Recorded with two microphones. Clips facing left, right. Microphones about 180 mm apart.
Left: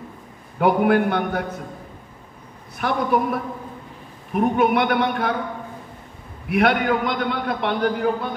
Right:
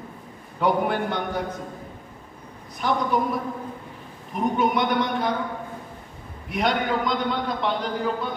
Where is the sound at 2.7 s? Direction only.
60° left (ahead or behind).